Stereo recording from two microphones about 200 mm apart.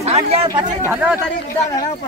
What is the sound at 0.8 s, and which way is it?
Speech, 10° right (ahead or behind).